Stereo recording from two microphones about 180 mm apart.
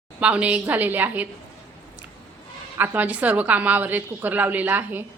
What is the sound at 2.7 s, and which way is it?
A woman's voice, 10° right (ahead or behind).